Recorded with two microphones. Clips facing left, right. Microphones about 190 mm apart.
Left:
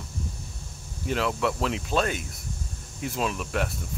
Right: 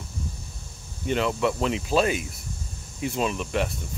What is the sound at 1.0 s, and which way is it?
Speech, centre (ahead or behind).